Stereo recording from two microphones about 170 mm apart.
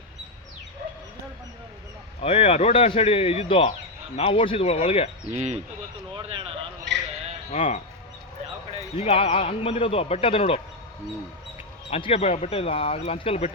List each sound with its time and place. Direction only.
2.2 s a man's voice: 35° left (ahead or behind)
5.3 s speech: 40° right (ahead or behind)
7.5 s a man's voice: 40° left (ahead or behind)
9.0 s a man's voice: 35° left (ahead or behind)
11.9 s a man's voice: 35° left (ahead or behind)